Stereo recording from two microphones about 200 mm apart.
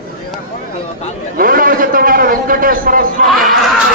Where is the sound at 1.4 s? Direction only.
45° right (ahead or behind).